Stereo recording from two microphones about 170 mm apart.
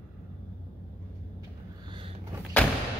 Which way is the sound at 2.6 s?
10° left (ahead or behind).